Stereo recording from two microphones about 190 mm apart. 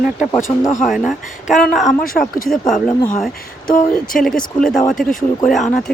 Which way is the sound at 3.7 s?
45° left (ahead or behind).